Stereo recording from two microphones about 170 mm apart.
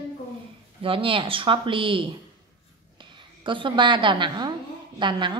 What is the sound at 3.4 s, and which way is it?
A woman's voice, 30° right (ahead or behind).